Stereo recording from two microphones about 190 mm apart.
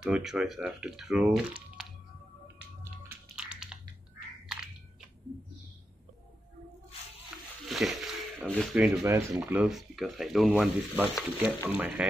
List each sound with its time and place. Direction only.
0.0 s stir: centre (ahead or behind)
3.3 s typing: 5° right (ahead or behind)
7.6 s a sound: centre (ahead or behind)
9.0 s speech: 15° right (ahead or behind)
9.4 s stir: 5° right (ahead or behind)